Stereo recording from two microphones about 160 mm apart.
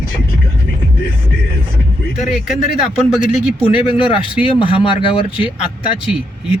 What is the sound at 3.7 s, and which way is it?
Speech, 30° left (ahead or behind).